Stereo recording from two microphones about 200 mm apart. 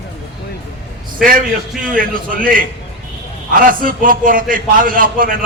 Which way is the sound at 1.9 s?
45° right (ahead or behind).